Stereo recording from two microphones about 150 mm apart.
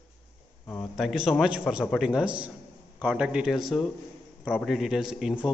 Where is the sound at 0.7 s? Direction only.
Centre (ahead or behind).